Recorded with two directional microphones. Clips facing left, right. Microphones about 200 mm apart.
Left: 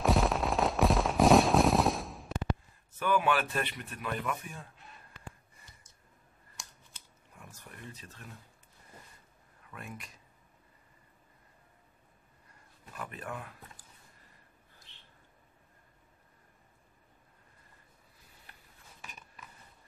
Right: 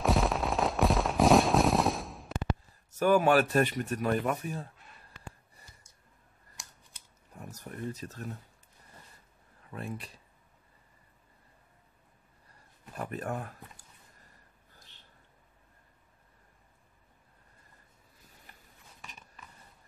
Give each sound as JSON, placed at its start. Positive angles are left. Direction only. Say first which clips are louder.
{"t": 0.0, "sound": "a sound", "louder": "even", "side_deg": 0}
{"t": 3.0, "sound": "speech", "louder": "right 6 dB", "side_deg": -45}
{"t": 7.3, "sound": "speech", "louder": "right 9 dB", "side_deg": -40}
{"t": 9.7, "sound": "speech", "louder": "right 6 dB", "side_deg": -35}
{"t": 12.9, "sound": "speech", "louder": "right 6 dB", "side_deg": -40}
{"t": 14.9, "sound": "a sound", "louder": "even", "side_deg": -40}